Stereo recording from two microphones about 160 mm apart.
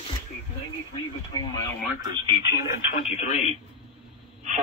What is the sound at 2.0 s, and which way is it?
Speech, 25° right (ahead or behind).